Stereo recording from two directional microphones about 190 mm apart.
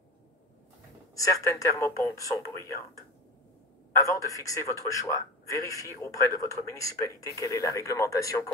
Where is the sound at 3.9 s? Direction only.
15° left (ahead or behind).